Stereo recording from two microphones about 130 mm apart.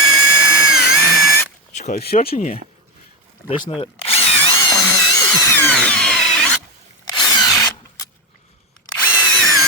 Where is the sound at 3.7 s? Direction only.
45° left (ahead or behind).